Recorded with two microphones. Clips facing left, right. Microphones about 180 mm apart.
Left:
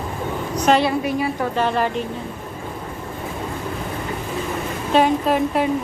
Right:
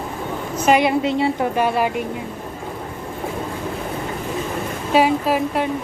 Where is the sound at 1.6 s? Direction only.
10° right (ahead or behind).